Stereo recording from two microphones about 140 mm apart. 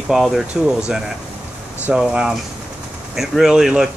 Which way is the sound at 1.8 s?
5° right (ahead or behind).